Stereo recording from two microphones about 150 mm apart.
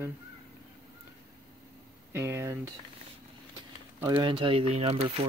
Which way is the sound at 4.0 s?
30° right (ahead or behind).